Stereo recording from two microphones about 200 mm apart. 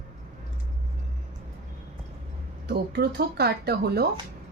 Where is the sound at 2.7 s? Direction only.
55° right (ahead or behind).